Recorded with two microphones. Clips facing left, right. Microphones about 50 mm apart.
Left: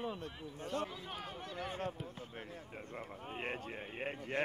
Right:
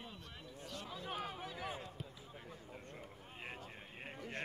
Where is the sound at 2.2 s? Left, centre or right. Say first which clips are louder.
Left 6 dB; left.